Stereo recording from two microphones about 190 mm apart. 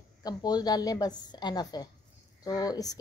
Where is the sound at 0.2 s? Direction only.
20° left (ahead or behind).